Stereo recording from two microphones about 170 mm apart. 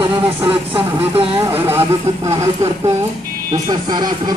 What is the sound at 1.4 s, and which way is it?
Speech, 15° right (ahead or behind).